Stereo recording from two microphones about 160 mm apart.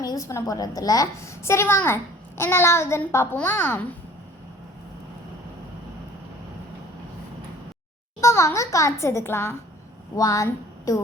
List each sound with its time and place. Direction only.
0.0 s a woman's voice: 20° left (ahead or behind)
8.2 s a child's voice: 15° left (ahead or behind)